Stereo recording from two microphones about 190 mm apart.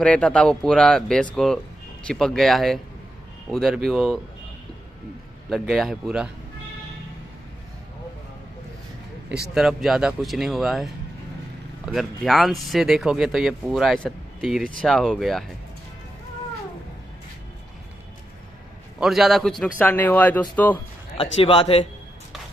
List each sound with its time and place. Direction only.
0.0 s speech: 5° left (ahead or behind)
5.5 s speech: centre (ahead or behind)
9.5 s speech: centre (ahead or behind)
18.9 s speech: centre (ahead or behind)
21.2 s a man's voice: 30° left (ahead or behind)